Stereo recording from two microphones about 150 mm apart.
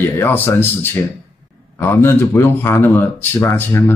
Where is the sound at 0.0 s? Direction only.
15° left (ahead or behind).